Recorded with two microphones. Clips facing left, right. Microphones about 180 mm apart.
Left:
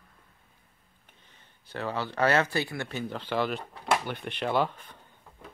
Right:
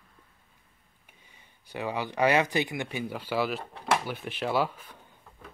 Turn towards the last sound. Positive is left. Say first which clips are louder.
# left 1 dB
turn(degrees=-5)  # may be behind; listen again after turning